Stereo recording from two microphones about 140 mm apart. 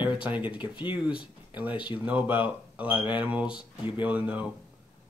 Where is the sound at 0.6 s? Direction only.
35° left (ahead or behind).